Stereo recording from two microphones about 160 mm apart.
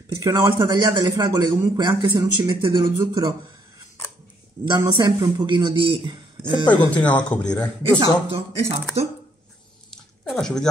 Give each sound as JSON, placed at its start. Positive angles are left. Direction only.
{"t": 0.1, "sound": "a man's voice", "side_deg": -20}
{"t": 4.6, "sound": "a man's voice", "side_deg": -25}
{"t": 6.9, "sound": "a man's voice", "side_deg": 10}
{"t": 8.0, "sound": "speech", "side_deg": -35}
{"t": 9.8, "sound": "squish", "side_deg": 5}